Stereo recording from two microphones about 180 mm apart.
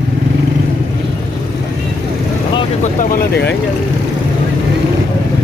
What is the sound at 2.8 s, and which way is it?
Speech, 50° left (ahead or behind).